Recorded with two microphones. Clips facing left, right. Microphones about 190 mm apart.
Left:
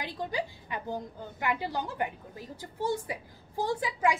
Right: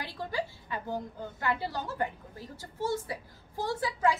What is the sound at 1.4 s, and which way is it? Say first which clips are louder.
A woman's voice: left 1 dB; 15° left (ahead or behind).